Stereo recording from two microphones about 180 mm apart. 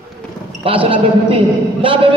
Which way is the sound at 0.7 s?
30° right (ahead or behind).